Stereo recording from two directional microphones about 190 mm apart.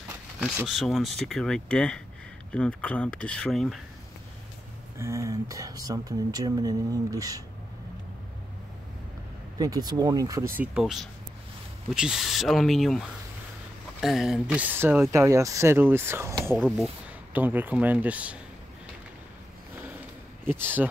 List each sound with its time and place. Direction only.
0.4 s speech: 5° right (ahead or behind)
4.9 s speech: 15° right (ahead or behind)
9.6 s speech: 20° right (ahead or behind)
16.5 s speech: centre (ahead or behind)
20.4 s speech: 10° right (ahead or behind)